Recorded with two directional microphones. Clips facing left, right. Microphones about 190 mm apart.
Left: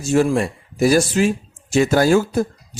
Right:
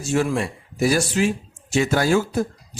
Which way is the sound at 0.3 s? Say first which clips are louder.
Left 4 dB; 40° left (ahead or behind).